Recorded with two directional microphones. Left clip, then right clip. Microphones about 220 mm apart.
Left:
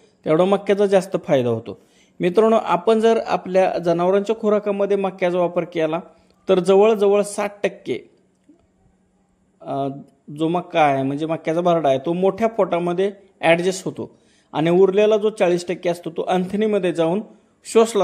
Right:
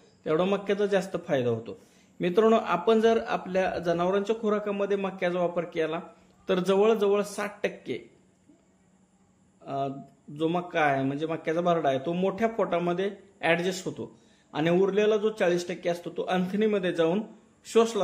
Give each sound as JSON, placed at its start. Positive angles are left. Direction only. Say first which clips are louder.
{"t": 0.2, "sound": "a man's voice", "louder": "left 9 dB", "side_deg": 25}
{"t": 9.6, "sound": "a man's voice", "louder": "left 7 dB", "side_deg": 25}